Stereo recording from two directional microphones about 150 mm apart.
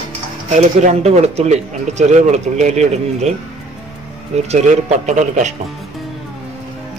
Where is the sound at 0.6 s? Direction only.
50° right (ahead or behind).